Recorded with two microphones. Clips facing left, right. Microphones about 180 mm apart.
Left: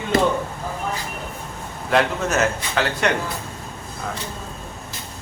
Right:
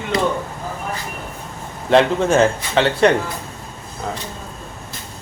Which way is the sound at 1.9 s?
30° right (ahead or behind).